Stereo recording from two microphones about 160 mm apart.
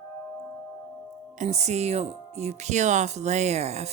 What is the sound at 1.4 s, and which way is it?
Speech, 45° right (ahead or behind).